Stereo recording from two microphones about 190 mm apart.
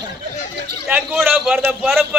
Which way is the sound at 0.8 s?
5° right (ahead or behind).